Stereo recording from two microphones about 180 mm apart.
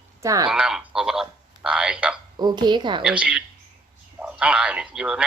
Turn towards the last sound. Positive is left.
turn(degrees=-5)  # may be behind; listen again after turning